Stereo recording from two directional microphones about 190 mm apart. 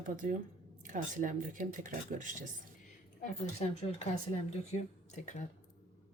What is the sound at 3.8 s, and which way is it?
Speech, 35° left (ahead or behind).